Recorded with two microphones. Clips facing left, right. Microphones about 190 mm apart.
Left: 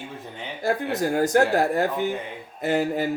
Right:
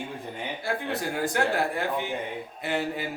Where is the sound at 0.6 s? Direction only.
45° left (ahead or behind).